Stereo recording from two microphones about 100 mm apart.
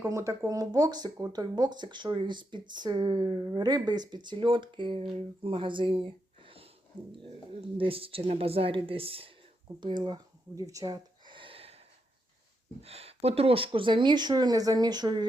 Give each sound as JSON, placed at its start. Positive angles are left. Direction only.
{"t": 0.0, "sound": "speech", "side_deg": -30}
{"t": 7.8, "sound": "speech", "side_deg": -70}
{"t": 9.8, "sound": "speech", "side_deg": -50}
{"t": 10.5, "sound": "speech", "side_deg": -35}
{"t": 11.3, "sound": "a sound", "side_deg": -60}
{"t": 12.8, "sound": "speech", "side_deg": -90}